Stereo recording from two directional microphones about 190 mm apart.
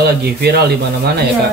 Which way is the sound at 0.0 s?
60° right (ahead or behind).